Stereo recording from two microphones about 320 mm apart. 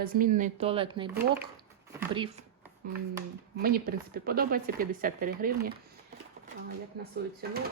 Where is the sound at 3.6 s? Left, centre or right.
Right.